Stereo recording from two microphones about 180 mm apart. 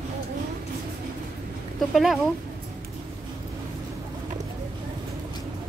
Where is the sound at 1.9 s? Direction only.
Centre (ahead or behind).